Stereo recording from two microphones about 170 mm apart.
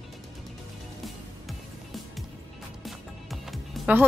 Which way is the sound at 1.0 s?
Centre (ahead or behind).